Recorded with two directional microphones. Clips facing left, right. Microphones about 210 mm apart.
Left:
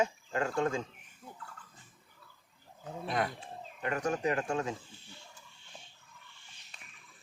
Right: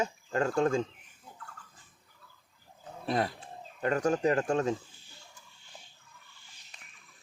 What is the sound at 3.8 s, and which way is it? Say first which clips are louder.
Speech: right 5 dB; 35° right (ahead or behind).